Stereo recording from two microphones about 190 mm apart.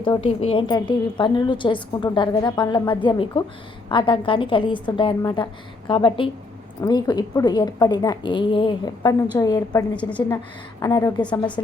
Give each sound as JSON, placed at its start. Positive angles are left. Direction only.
{"t": 0.0, "sound": "a woman's voice", "side_deg": 25}
{"t": 11.2, "sound": "speech", "side_deg": 5}